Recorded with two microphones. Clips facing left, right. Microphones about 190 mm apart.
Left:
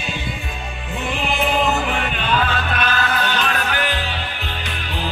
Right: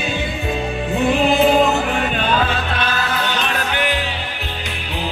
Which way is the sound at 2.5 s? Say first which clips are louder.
Even; 25° right (ahead or behind).